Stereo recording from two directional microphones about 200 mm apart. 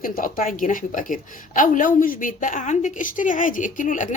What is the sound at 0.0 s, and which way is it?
Speech, 45° left (ahead or behind).